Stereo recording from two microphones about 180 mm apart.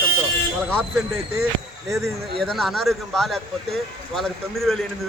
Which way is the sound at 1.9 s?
15° right (ahead or behind).